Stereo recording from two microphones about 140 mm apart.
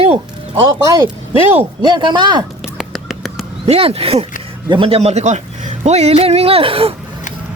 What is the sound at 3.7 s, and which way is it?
Speech, 45° right (ahead or behind).